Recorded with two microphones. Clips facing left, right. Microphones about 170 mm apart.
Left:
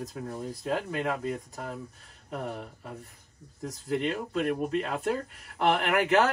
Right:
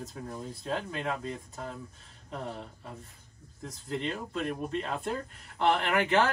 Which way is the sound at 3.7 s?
5° left (ahead or behind).